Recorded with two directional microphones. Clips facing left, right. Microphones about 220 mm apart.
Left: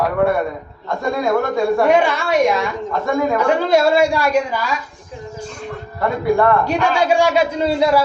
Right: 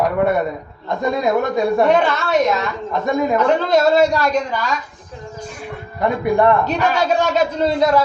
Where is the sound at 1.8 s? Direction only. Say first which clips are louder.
Left 1 dB; 10° left (ahead or behind).